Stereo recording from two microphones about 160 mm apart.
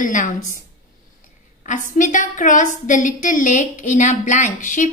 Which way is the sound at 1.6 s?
50° left (ahead or behind).